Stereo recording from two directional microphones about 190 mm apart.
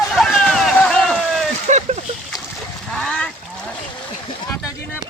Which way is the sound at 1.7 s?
35° right (ahead or behind).